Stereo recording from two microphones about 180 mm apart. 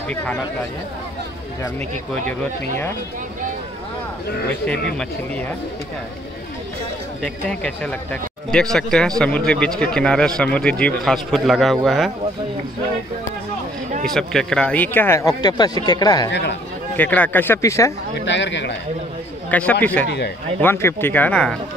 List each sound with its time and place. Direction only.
2.2 s speech: 45° right (ahead or behind)
7.4 s a man's voice: 5° left (ahead or behind)
14.0 s speech: centre (ahead or behind); by 16.3 s 20° left (ahead or behind)
16.3 s speech: 75° left (ahead or behind)
16.9 s speech: 10° left (ahead or behind)
18.2 s speech: 85° left
19.5 s speech: 10° left (ahead or behind)